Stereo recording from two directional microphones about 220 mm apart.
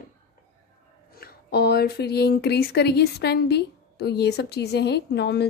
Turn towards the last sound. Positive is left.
turn(degrees=50)  # may be behind; listen again after turning